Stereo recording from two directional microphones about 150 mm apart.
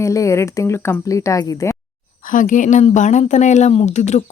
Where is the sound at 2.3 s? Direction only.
60° left (ahead or behind).